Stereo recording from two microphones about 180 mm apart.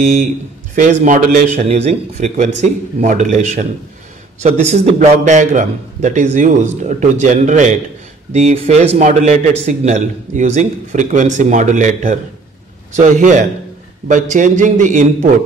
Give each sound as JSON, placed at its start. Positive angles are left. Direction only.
{"t": 0.0, "sound": "a man's voice", "side_deg": -40}